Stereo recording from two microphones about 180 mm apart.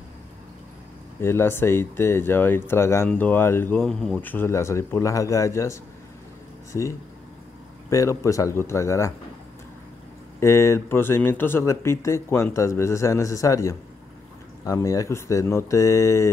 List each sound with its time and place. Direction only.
1.2 s speech: 15° left (ahead or behind)
10.4 s speech: 15° left (ahead or behind)